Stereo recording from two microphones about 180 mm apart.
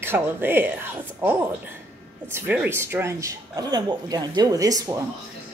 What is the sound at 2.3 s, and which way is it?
Speech, 10° right (ahead or behind).